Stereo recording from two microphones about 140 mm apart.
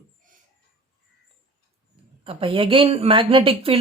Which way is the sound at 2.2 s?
40° right (ahead or behind).